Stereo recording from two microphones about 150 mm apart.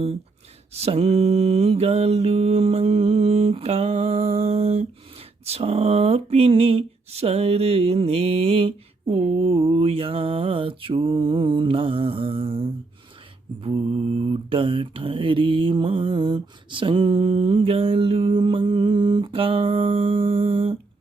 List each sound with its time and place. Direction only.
0.7 s mantra: 45° right (ahead or behind)
5.5 s a sound: 40° right (ahead or behind)
13.6 s mantra: 40° right (ahead or behind)